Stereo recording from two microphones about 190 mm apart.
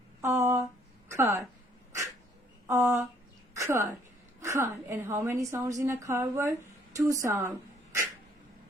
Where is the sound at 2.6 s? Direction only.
15° right (ahead or behind).